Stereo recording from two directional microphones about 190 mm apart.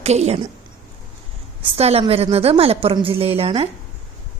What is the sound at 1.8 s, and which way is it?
A woman's voice, 30° right (ahead or behind).